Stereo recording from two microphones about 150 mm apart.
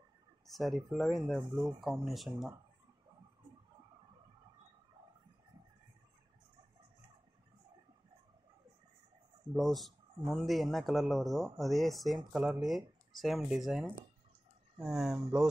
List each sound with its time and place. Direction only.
0.5 s speech: centre (ahead or behind)
9.6 s speech: centre (ahead or behind)